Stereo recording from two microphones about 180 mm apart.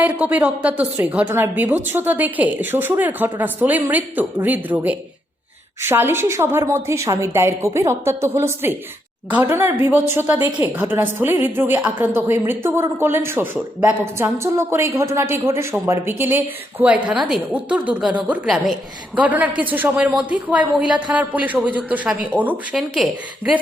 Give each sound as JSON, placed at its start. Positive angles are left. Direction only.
{"t": 0.0, "sound": "a woman's voice", "side_deg": -10}